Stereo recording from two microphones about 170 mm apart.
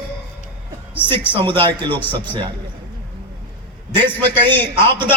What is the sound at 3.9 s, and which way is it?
Speech, 25° right (ahead or behind).